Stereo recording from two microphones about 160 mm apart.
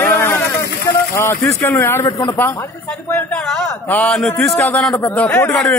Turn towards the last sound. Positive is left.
turn(degrees=10)  # may be behind; listen again after turning